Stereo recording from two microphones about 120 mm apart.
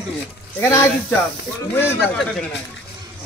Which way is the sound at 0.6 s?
20° left (ahead or behind).